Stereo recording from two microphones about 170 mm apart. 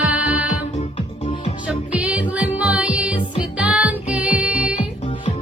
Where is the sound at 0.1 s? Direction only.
10° right (ahead or behind).